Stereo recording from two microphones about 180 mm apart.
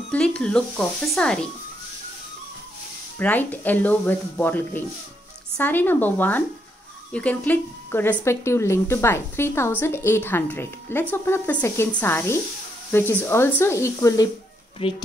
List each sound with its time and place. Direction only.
0.1 s speech: 5° left (ahead or behind)
3.2 s speech: 10° left (ahead or behind)
14.8 s speech: 30° left (ahead or behind)